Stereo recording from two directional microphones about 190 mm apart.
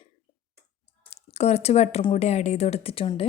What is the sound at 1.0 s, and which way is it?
Speech, 35° left (ahead or behind).